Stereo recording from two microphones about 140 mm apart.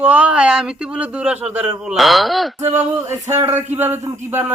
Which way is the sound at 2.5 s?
20° right (ahead or behind).